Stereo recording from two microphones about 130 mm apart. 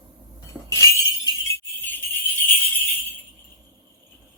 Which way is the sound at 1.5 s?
15° left (ahead or behind).